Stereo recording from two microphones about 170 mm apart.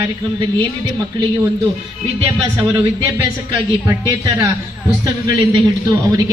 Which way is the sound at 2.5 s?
20° right (ahead or behind).